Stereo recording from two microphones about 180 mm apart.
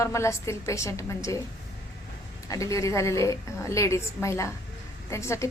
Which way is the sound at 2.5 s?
20° left (ahead or behind).